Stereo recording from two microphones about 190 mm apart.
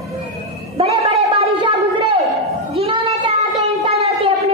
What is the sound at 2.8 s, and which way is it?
Child singing, 30° right (ahead or behind).